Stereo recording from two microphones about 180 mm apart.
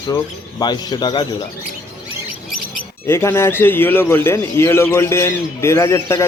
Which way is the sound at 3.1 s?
15° left (ahead or behind).